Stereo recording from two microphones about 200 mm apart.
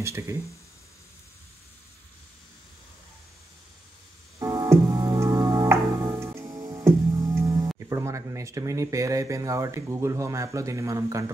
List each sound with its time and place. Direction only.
0.0 s speech: 15° right (ahead or behind)
4.4 s music: 15° right (ahead or behind)
7.8 s speech: 15° right (ahead or behind)